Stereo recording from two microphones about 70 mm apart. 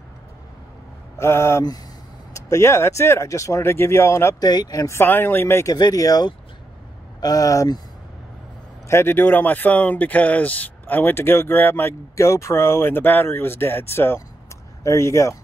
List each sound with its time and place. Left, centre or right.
1.1 s speech: left
4.4 s speech: left
4.8 s speech: left
5.7 s speech: left
8.8 s speech: left
12.2 s speech: left